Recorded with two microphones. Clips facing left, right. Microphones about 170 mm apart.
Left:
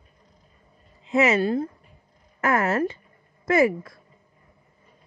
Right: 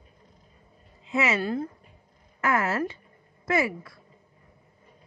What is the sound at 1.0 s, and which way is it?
Speech, 40° left (ahead or behind).